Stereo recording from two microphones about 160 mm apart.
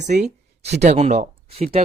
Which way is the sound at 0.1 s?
60° right (ahead or behind).